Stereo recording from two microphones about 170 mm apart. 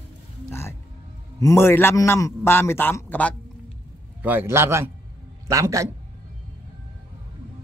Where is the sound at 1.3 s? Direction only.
15° left (ahead or behind).